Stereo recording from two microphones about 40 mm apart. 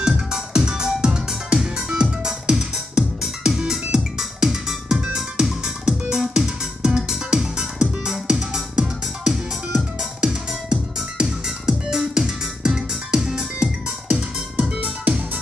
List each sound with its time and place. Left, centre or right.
0.0 s music: centre